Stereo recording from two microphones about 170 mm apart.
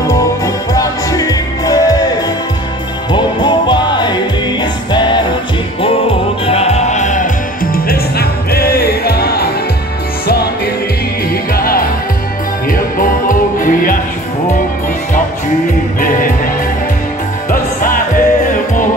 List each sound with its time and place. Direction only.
0.7 s music: 20° left (ahead or behind)
3.1 s music: 25° left (ahead or behind); by 7.2 s 45° left (ahead or behind)
7.7 s music: 60° left (ahead or behind)
16.0 s music: 55° left (ahead or behind)
17.5 s music: 55° left (ahead or behind)